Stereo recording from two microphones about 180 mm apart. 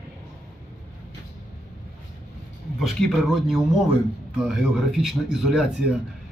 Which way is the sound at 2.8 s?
Centre (ahead or behind).